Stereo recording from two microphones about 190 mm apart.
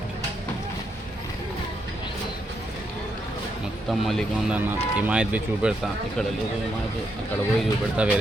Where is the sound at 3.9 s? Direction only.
Centre (ahead or behind).